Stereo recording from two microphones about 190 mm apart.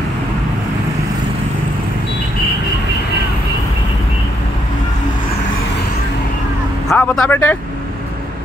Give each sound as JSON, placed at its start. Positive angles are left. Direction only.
{"t": 6.9, "sound": "speech", "side_deg": 10}